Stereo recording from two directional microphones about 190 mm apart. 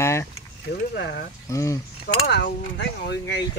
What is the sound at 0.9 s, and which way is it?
Speech, 65° left (ahead or behind).